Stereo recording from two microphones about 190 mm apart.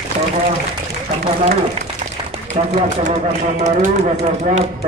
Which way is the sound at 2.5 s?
35° right (ahead or behind).